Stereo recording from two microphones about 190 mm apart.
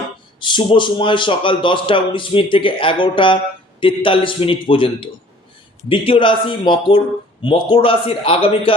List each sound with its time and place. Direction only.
0.3 s a man's voice: 25° left (ahead or behind)